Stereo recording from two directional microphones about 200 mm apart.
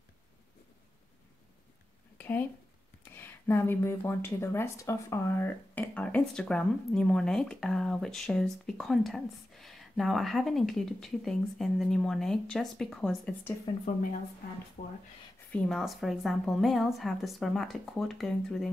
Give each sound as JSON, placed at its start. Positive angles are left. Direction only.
{"t": 2.1, "sound": "a sound", "side_deg": 10}
{"t": 3.1, "sound": "speech", "side_deg": 10}
{"t": 14.8, "sound": "speech", "side_deg": 40}
{"t": 15.5, "sound": "speech", "side_deg": 0}